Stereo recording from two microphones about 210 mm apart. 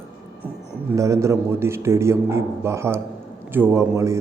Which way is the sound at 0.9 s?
15° right (ahead or behind).